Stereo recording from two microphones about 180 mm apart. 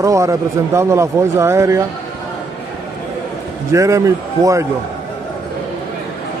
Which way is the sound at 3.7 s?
15° right (ahead or behind).